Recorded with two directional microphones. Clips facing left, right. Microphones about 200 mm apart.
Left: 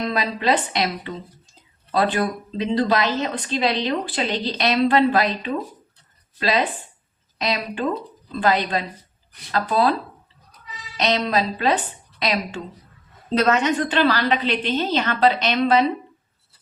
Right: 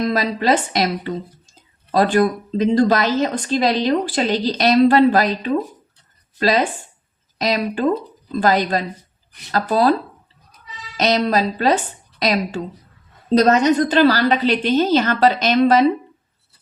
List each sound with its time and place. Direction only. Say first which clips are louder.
0.0 s a woman's voice: right 4 dB; 40° right (ahead or behind)
10.9 s a woman's voice: right 4 dB; 40° right (ahead or behind)